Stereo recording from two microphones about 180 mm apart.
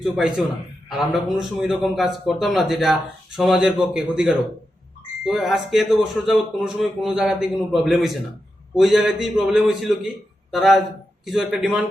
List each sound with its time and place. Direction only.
0.0 s a man's voice: 5° right (ahead or behind)